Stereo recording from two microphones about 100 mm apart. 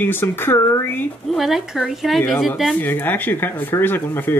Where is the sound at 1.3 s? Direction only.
Centre (ahead or behind).